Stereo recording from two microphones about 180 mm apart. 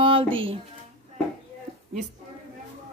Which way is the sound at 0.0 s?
30° right (ahead or behind).